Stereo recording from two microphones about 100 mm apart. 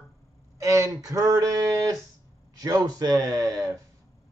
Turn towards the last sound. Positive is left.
turn(degrees=-35)  # may be behind; listen again after turning